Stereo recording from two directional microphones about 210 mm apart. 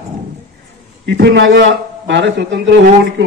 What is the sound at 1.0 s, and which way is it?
A man's voice, 55° right (ahead or behind).